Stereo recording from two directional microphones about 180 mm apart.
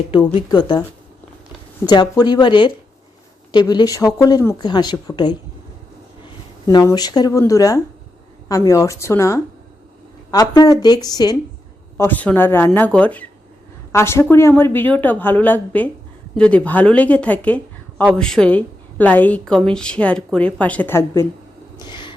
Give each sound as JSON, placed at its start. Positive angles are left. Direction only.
{"t": 0.3, "sound": "speech", "side_deg": 25}
{"t": 1.9, "sound": "speech", "side_deg": 25}
{"t": 6.7, "sound": "a woman's voice", "side_deg": 20}
{"t": 10.5, "sound": "speech", "side_deg": 20}
{"t": 11.9, "sound": "a woman's voice", "side_deg": 10}
{"t": 21.8, "sound": "owl", "side_deg": 25}